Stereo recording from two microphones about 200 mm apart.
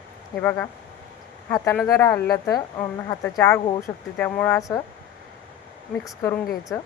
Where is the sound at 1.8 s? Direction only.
15° left (ahead or behind).